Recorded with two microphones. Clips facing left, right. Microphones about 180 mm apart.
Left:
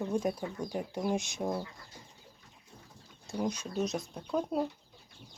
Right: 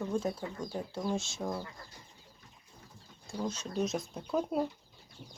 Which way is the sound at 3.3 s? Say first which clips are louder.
Left 3 dB; 15° left (ahead or behind).